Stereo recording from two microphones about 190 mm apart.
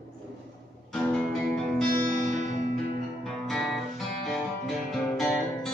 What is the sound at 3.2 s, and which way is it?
Music, centre (ahead or behind).